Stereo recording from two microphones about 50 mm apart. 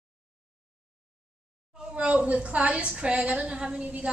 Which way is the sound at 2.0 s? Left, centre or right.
Right.